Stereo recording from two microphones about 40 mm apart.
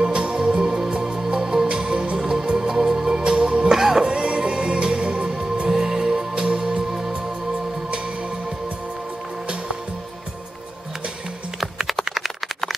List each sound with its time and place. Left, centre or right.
0.0 s music: right
4.0 s music: right
11.9 s typing: centre